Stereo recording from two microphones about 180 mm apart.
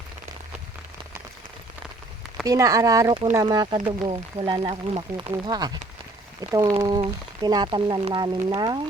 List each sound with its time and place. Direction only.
2.4 s speech: 20° right (ahead or behind)